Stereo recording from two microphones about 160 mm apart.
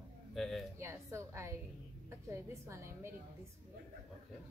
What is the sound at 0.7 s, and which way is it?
A woman's voice, 15° right (ahead or behind).